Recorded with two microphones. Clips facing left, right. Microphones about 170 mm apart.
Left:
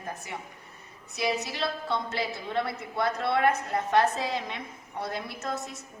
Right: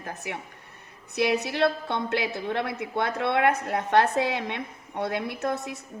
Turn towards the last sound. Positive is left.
turn(degrees=-60)  # may be behind; listen again after turning